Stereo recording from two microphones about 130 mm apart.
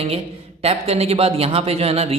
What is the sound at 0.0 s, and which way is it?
A man's voice, 50° right (ahead or behind).